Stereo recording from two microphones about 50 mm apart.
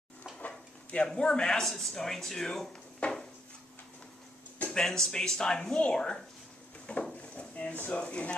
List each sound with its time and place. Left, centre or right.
0.5 s speech: centre
3.0 s a sound: left
4.7 s speech: centre
6.9 s drawer open or close: left
7.9 s speech: left